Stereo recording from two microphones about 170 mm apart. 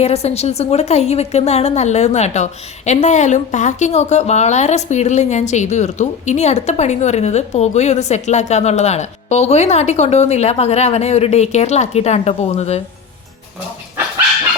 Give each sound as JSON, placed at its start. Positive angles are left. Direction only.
{"t": 0.0, "sound": "a woman's voice", "side_deg": 40}